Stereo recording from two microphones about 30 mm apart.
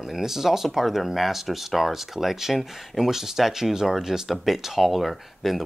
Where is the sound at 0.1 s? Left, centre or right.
Centre.